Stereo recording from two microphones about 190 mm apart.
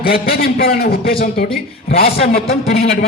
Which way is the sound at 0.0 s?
50° left (ahead or behind).